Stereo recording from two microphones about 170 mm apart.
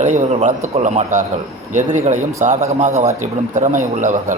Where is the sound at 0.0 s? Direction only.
45° right (ahead or behind).